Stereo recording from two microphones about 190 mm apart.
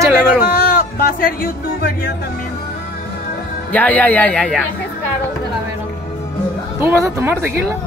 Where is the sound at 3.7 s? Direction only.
10° left (ahead or behind).